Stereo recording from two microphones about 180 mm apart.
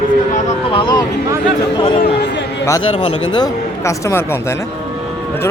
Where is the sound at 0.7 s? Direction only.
25° left (ahead or behind).